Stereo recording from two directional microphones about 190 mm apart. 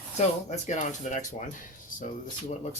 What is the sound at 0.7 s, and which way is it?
Speech, 40° left (ahead or behind).